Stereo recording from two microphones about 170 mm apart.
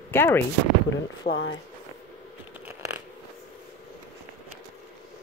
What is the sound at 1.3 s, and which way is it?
Speech, 50° left (ahead or behind).